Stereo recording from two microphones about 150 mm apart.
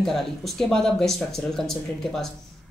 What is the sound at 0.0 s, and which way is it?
Speech, centre (ahead or behind).